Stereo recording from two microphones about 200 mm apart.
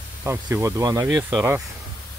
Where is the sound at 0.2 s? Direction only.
10° right (ahead or behind).